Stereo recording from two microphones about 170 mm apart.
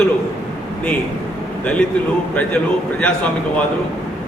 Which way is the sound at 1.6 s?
5° left (ahead or behind).